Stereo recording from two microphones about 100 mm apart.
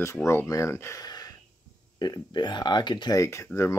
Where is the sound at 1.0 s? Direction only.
40° left (ahead or behind).